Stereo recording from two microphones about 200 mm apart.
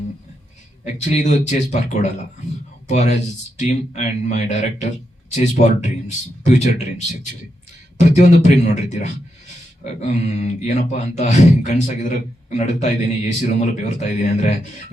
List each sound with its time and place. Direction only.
0.9 s speech: 35° left (ahead or behind)
7.9 s speech: 35° left (ahead or behind)